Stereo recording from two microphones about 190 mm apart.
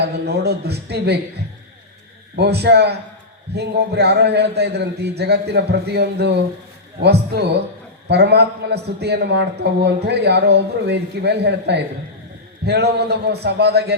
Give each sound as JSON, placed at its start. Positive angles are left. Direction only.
{"t": 0.0, "sound": "a man's voice", "side_deg": -60}
{"t": 2.3, "sound": "a man's voice", "side_deg": -60}